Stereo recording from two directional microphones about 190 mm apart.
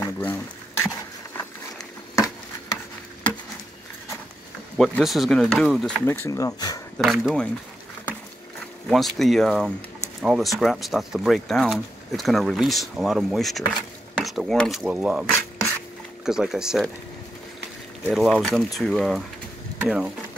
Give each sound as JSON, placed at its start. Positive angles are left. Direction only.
{"t": 0.0, "sound": "a sound", "side_deg": 10}
{"t": 4.7, "sound": "speech", "side_deg": 0}
{"t": 6.2, "sound": "speech", "side_deg": 15}
{"t": 7.0, "sound": "speech", "side_deg": 0}
{"t": 8.8, "sound": "speech", "side_deg": 0}
{"t": 16.3, "sound": "speech", "side_deg": -5}
{"t": 18.0, "sound": "speech", "side_deg": 0}